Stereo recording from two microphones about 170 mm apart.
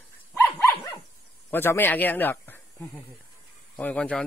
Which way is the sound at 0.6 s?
15° left (ahead or behind).